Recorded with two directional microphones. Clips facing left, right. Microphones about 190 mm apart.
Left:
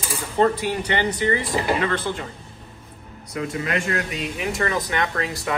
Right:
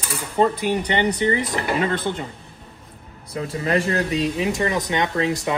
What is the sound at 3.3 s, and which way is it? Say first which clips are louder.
Speech: right 3 dB; 35° right (ahead or behind).